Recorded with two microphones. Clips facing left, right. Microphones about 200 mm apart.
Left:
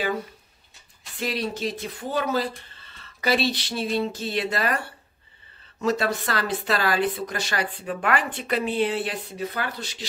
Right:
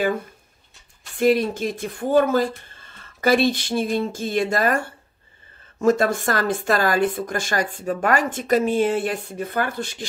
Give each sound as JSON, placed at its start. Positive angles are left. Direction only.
{"t": 1.1, "sound": "speech", "side_deg": -50}